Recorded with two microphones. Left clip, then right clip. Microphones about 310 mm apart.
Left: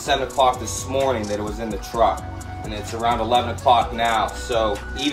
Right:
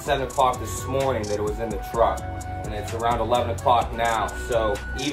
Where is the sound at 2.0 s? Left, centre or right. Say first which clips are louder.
Left 2 dB; left.